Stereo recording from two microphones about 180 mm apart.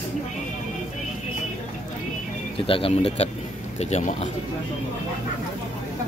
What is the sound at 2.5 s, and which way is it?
A man's voice, 30° left (ahead or behind).